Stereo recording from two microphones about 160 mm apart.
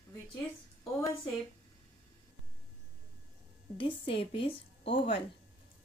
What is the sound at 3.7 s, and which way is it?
Speech, 35° left (ahead or behind).